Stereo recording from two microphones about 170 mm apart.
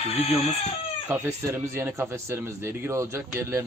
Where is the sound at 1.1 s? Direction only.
15° right (ahead or behind).